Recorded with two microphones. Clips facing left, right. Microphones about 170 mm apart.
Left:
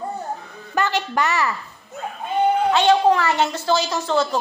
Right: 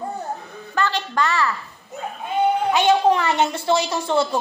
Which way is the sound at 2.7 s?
15° right (ahead or behind).